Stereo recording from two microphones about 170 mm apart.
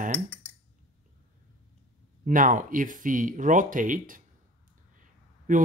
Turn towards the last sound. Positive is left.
turn(degrees=-50)  # may be behind; listen again after turning